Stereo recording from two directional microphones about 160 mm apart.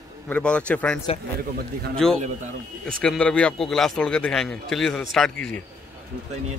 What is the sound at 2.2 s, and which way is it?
Speech, 50° right (ahead or behind).